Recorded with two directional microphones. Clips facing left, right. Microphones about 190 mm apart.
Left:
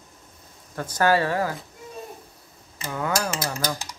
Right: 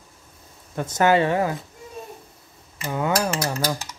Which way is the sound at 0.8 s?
25° right (ahead or behind).